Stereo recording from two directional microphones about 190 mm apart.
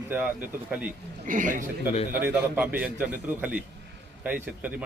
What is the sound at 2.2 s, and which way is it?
Speech, 10° right (ahead or behind).